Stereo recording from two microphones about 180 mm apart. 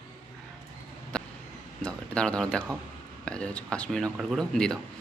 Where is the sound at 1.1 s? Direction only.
5° left (ahead or behind).